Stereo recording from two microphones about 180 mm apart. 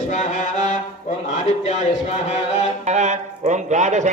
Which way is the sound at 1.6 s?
40° left (ahead or behind).